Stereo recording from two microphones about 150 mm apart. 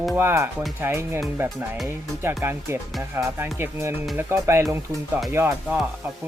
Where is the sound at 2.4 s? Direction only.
20° right (ahead or behind).